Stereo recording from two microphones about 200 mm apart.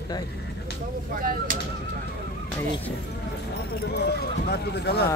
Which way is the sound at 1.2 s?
45° right (ahead or behind).